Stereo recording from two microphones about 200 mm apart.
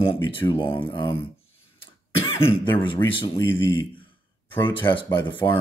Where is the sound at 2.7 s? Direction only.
25° left (ahead or behind).